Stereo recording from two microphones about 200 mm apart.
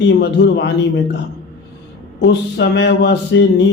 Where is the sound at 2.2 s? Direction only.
60° left (ahead or behind).